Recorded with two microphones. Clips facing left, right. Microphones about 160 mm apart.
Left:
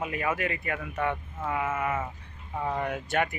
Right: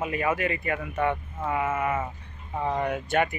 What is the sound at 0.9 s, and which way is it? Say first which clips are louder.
Speech: right 3 dB; 15° right (ahead or behind).